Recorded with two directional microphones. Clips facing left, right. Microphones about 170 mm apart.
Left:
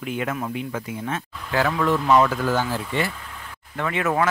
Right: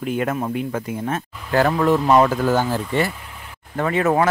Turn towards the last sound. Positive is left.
turn(degrees=-35)  # may be behind; listen again after turning